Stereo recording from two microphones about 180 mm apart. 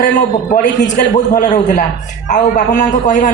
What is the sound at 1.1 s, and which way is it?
A man's voice, 45° left (ahead or behind).